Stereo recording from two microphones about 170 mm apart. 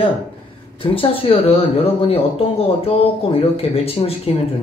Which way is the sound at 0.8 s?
35° left (ahead or behind).